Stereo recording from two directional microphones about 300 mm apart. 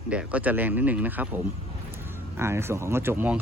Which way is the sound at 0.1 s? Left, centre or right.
Centre.